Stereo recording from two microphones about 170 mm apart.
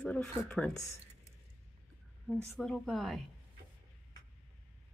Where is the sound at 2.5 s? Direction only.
5° left (ahead or behind).